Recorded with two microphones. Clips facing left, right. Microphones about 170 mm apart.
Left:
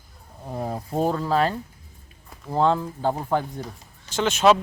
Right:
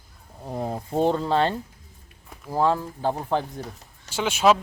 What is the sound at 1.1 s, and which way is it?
Speech, 25° right (ahead or behind).